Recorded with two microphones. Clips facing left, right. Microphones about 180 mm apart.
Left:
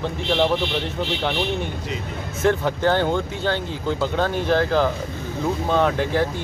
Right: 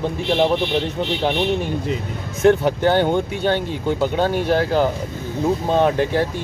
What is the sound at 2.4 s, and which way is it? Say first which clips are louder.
Speech: right 4 dB; 20° right (ahead or behind).